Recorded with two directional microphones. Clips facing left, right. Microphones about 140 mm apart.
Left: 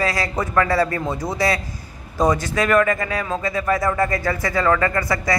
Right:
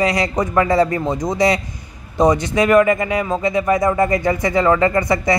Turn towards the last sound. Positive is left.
turn(degrees=-20)  # may be behind; listen again after turning